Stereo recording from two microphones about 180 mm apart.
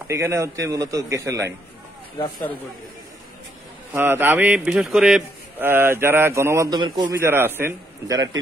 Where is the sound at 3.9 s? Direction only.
10° right (ahead or behind).